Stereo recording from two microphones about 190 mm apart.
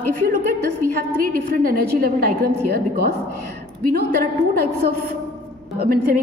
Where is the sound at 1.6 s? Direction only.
50° right (ahead or behind).